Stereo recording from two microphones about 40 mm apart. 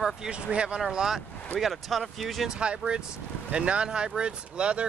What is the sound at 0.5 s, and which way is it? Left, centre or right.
Speech, right.